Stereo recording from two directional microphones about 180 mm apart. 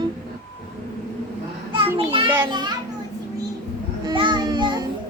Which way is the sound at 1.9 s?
30° right (ahead or behind).